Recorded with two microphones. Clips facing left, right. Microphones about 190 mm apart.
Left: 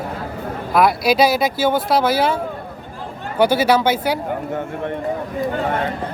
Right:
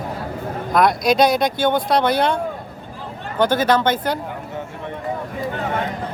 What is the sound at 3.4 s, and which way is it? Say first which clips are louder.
Speech: left 2 dB; 10° left (ahead or behind).